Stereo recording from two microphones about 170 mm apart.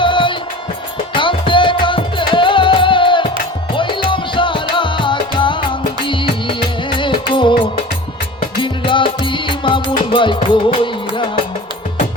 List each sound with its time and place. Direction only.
0.0 s music: 30° left (ahead or behind)